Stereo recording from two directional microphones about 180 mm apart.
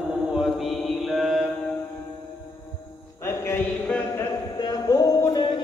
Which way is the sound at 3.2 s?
15° left (ahead or behind).